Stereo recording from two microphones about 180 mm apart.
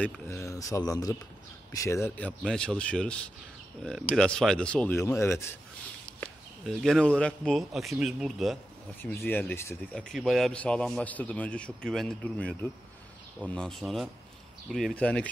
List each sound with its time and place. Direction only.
0.0 s a man's voice: 15° left (ahead or behind)
6.2 s a man's voice: 5° left (ahead or behind)
9.0 s a man's voice: 10° left (ahead or behind)
10.0 s a man's voice: centre (ahead or behind)